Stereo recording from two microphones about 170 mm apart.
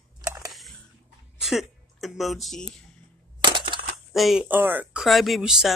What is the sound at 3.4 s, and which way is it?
Crushing, 25° right (ahead or behind).